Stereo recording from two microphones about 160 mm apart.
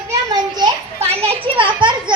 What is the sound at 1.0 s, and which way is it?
A child's voice, 40° right (ahead or behind).